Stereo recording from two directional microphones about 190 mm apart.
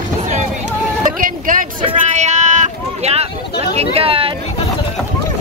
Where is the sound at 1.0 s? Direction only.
45° right (ahead or behind).